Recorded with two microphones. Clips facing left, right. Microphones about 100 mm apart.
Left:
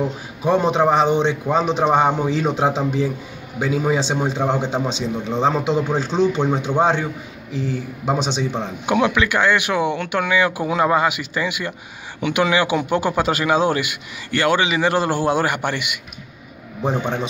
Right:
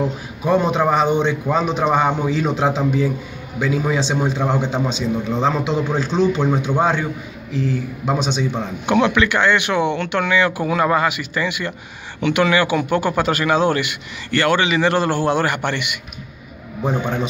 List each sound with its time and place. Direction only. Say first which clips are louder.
0.5 s a man's voice: even; 30° left (ahead or behind)
8.0 s a man's voice: even; 25° left (ahead or behind)
8.8 s a man's voice: right 2 dB; 10° left (ahead or behind)
16.8 s a man's voice: right 1 dB; 25° left (ahead or behind)